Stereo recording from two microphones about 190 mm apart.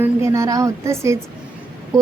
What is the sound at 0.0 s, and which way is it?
A woman's voice, 15° right (ahead or behind).